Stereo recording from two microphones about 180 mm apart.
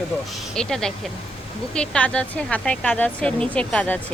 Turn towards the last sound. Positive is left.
turn(degrees=5)  # may be behind; listen again after turning